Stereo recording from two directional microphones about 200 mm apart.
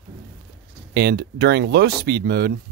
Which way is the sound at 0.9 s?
55° right (ahead or behind).